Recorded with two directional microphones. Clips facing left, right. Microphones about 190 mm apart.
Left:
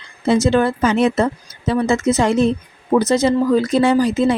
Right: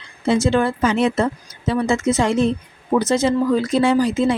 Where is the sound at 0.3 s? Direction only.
40° left (ahead or behind).